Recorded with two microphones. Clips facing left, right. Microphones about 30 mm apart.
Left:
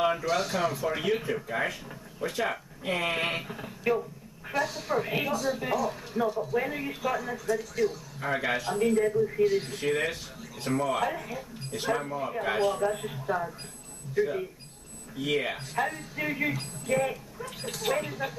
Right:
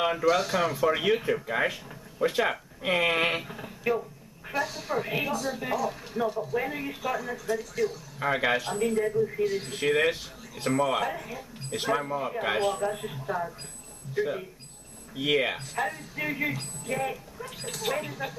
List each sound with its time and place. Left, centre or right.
0.0 s speech: centre
3.4 s speech: centre
8.2 s speech: centre
8.5 s speech: centre
9.7 s speech: centre
11.8 s speech: centre
12.7 s speech: centre
14.1 s speech: centre
15.7 s speech: centre